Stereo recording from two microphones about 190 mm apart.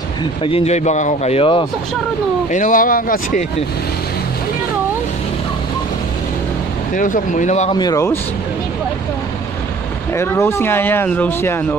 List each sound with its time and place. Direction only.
0.4 s speech: 30° left (ahead or behind)
2.5 s speech: 45° left (ahead or behind)
7.0 s speech: 45° left (ahead or behind)
7.7 s speech: 20° left (ahead or behind)
10.1 s speech: 15° left (ahead or behind)